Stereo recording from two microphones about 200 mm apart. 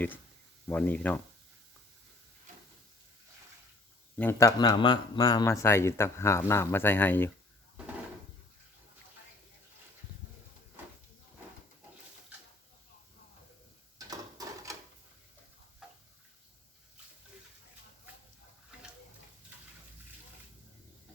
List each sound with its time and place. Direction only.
0.7 s speech: 5° left (ahead or behind)
4.2 s speech: 15° left (ahead or behind)
14.1 s a sound: 15° right (ahead or behind)